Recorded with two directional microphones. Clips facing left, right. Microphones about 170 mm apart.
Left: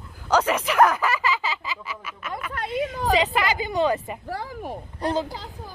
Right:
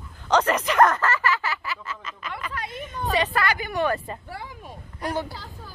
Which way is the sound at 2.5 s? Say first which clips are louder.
Left 7 dB; 65° left (ahead or behind).